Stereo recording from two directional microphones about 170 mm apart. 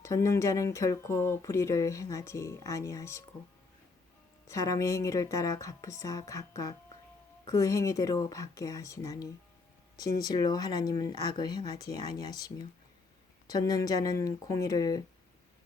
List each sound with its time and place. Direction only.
0.0 s speech: 15° left (ahead or behind)
4.4 s a woman's voice: 20° left (ahead or behind)
13.5 s a woman's voice: 20° left (ahead or behind)